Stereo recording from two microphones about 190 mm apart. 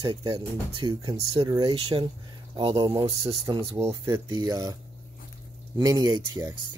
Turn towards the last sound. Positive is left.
turn(degrees=-20)  # may be behind; listen again after turning